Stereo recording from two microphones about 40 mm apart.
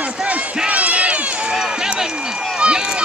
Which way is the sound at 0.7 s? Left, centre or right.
Right.